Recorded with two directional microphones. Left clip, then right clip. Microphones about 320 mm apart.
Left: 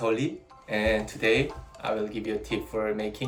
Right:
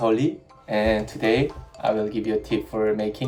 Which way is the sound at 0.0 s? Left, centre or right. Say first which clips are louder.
Right 6 dB; centre.